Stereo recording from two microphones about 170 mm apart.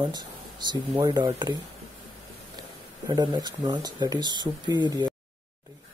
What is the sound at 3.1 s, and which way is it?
Speech, 25° right (ahead or behind).